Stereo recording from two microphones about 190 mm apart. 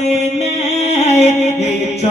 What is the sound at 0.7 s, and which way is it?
Music, 35° left (ahead or behind).